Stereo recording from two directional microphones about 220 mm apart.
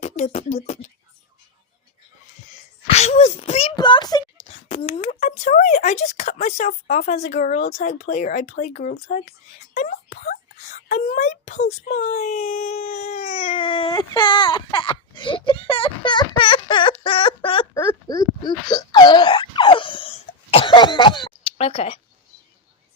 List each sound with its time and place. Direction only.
0.0 s speech: 30° left (ahead or behind)
2.8 s speech: 30° left (ahead or behind)